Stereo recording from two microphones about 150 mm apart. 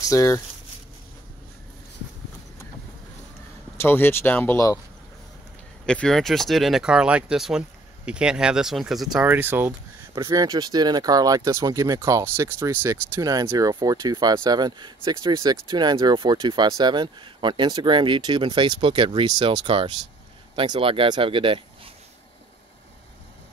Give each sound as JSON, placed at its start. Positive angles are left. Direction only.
{"t": 0.0, "sound": "speech", "side_deg": 20}
{"t": 3.7, "sound": "speech", "side_deg": 15}
{"t": 5.9, "sound": "speech", "side_deg": 5}
{"t": 9.2, "sound": "speech", "side_deg": -10}